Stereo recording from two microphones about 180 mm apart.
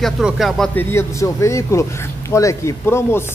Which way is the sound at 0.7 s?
15° left (ahead or behind).